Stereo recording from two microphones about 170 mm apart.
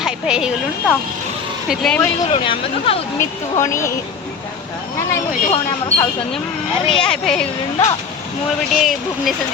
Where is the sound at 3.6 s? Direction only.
15° left (ahead or behind).